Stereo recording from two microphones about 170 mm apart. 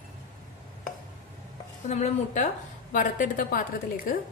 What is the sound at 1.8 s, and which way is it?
A woman's voice, 45° left (ahead or behind).